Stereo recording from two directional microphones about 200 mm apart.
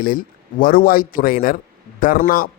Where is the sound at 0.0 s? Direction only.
45° left (ahead or behind).